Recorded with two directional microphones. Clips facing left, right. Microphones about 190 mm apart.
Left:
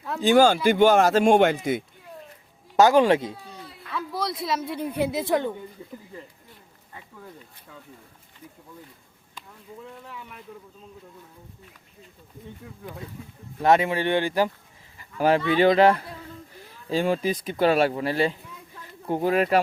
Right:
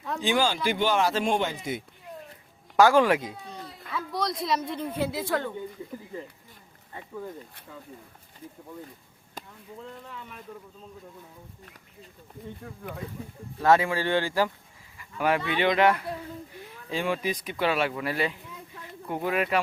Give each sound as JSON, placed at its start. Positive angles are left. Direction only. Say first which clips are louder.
{"t": 0.2, "sound": "speech", "louder": "left 9 dB", "side_deg": 45}
{"t": 2.7, "sound": "speech", "louder": "left 2 dB", "side_deg": 20}
{"t": 3.5, "sound": "a woman's voice", "louder": "left 1 dB", "side_deg": 5}
{"t": 9.4, "sound": "a sound", "louder": "right 3 dB", "side_deg": -45}
{"t": 9.8, "sound": "speech", "louder": "even", "side_deg": 5}
{"t": 13.6, "sound": "speech", "louder": "left 2 dB", "side_deg": 20}
{"t": 14.9, "sound": "speech", "louder": "left 5 dB", "side_deg": 30}